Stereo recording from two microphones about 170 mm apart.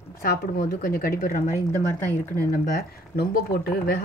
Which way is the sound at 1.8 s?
15° left (ahead or behind).